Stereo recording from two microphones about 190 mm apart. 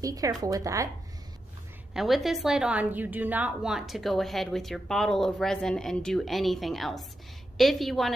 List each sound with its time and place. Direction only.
0.0 s speech: 20° right (ahead or behind)
2.0 s a woman's voice: centre (ahead or behind)